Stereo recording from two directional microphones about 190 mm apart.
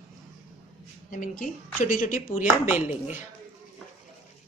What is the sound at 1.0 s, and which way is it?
Speech, 45° left (ahead or behind).